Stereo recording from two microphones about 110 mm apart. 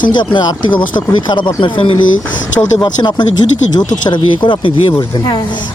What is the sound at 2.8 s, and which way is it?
Speech, 40° left (ahead or behind).